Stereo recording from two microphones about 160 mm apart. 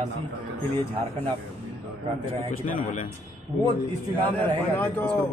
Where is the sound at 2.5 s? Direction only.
55° left (ahead or behind).